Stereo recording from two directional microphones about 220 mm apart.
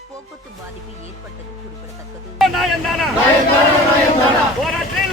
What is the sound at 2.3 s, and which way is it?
Speech, centre (ahead or behind).